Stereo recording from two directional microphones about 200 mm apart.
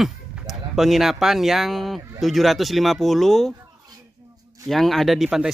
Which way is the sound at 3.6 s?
15° right (ahead or behind).